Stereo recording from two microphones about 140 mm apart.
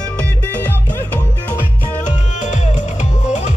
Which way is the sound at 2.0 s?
60° left (ahead or behind).